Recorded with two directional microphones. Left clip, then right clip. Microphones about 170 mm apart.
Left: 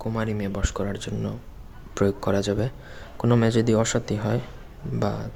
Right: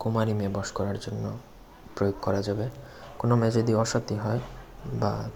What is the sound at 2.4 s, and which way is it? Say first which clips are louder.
Speech: left 4 dB; 25° left (ahead or behind).